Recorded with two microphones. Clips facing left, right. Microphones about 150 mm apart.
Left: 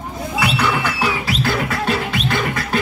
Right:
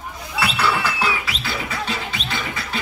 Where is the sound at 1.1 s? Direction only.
40° left (ahead or behind).